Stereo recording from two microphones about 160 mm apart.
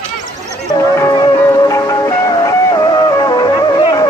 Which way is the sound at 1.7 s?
20° left (ahead or behind).